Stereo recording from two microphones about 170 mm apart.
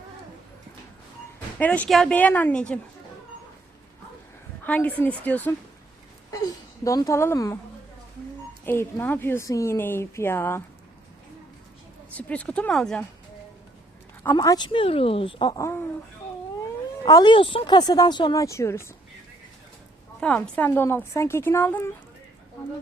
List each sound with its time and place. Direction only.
1.5 s a woman's voice: 10° left (ahead or behind)
4.6 s a woman's voice: 10° left (ahead or behind)
6.8 s speech: 20° left (ahead or behind)
8.6 s a woman's voice: 15° left (ahead or behind)
12.1 s a woman's voice: 10° left (ahead or behind)
14.3 s speech: 25° left (ahead or behind)
15.5 s a woman's voice: 15° left (ahead or behind)
17.1 s speech: 25° left (ahead or behind)
20.1 s a woman's voice: 5° left (ahead or behind)